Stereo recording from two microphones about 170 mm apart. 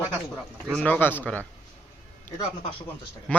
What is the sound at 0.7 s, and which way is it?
Speech, 5° left (ahead or behind).